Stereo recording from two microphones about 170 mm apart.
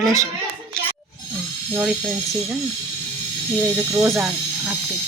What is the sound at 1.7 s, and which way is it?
Speech, 5° right (ahead or behind).